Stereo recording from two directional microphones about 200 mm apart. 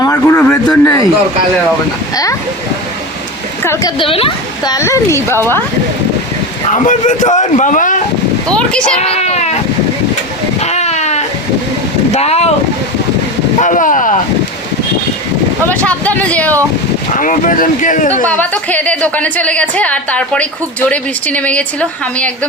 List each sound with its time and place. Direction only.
0.0 s a sound: 15° left (ahead or behind)
3.6 s a woman's voice: 15° left (ahead or behind)
3.9 s speech: 25° left (ahead or behind)
6.7 s a man's voice: 35° left (ahead or behind)
8.4 s speech: 5° left (ahead or behind)
9.0 s a man's voice: 30° left (ahead or behind)
10.6 s a sound: 35° left (ahead or behind)
12.1 s a man's voice: 30° left (ahead or behind)
13.6 s a man's voice: 40° left (ahead or behind)
15.7 s a woman's voice: 5° left (ahead or behind)
17.2 s a man's voice: 40° left (ahead or behind)
18.1 s a woman's voice: 10° left (ahead or behind)